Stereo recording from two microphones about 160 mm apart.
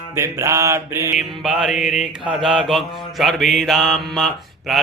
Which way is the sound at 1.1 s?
Centre (ahead or behind).